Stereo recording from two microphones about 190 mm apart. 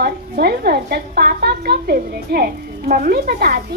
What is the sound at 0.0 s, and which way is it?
A woman's voice, 55° right (ahead or behind).